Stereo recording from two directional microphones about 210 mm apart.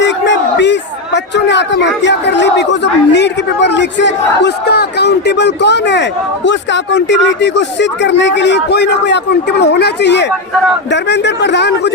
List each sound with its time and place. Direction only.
0.0 s a man's voice: 55° left (ahead or behind)